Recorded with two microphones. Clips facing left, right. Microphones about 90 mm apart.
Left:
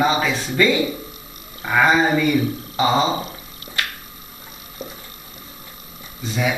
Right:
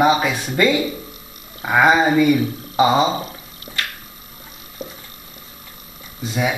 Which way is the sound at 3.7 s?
10° right (ahead or behind).